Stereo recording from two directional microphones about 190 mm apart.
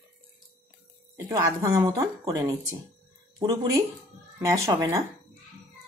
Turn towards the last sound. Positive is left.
turn(degrees=-20)  # may be behind; listen again after turning